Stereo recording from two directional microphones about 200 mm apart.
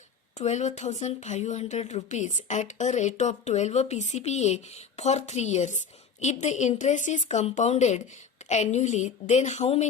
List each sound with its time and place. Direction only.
0.3 s speech: 35° left (ahead or behind)